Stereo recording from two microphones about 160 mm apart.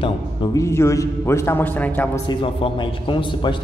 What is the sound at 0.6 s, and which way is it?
A man's voice, 20° left (ahead or behind).